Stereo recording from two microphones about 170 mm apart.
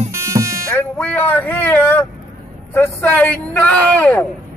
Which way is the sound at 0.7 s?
10° left (ahead or behind).